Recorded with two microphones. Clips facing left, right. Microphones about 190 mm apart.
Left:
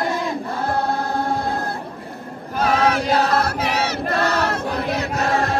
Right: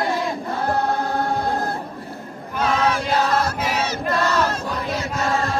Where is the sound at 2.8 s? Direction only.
65° left (ahead or behind).